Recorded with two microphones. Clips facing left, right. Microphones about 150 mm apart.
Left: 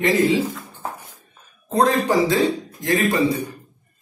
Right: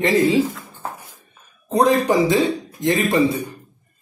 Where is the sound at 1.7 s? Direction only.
20° right (ahead or behind).